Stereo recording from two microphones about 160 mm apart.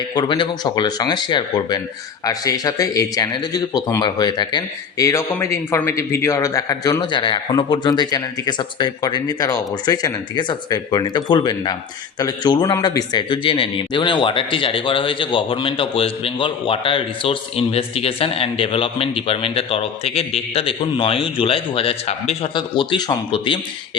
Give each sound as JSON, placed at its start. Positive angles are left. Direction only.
{"t": 0.1, "sound": "a man's voice", "side_deg": 25}